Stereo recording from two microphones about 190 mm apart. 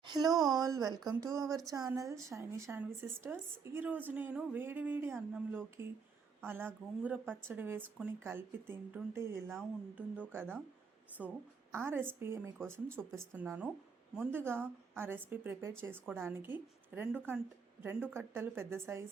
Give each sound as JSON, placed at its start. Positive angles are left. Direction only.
{"t": 0.4, "sound": "a woman's voice", "side_deg": -20}